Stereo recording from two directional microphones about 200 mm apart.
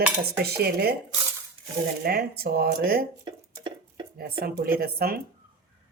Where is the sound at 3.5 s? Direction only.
20° right (ahead or behind).